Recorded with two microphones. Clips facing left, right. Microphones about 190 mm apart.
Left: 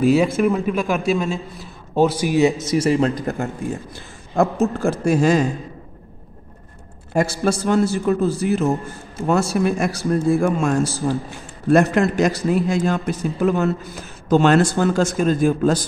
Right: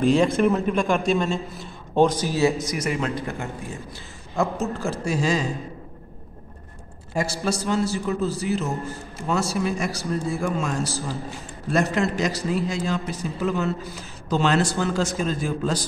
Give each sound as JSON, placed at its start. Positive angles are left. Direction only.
{"t": 0.0, "sound": "a man's voice", "side_deg": 10}
{"t": 4.4, "sound": "speech", "side_deg": 55}
{"t": 7.2, "sound": "a man's voice", "side_deg": 55}